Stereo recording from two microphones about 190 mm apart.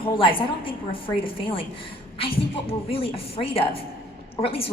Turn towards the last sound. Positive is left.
turn(degrees=30)  # may be behind; listen again after turning